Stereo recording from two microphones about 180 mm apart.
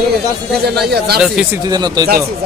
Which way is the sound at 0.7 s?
65° right (ahead or behind).